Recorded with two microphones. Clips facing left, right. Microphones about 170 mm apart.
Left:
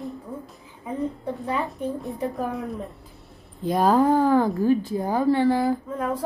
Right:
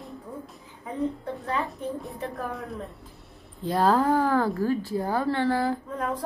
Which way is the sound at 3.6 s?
15° left (ahead or behind).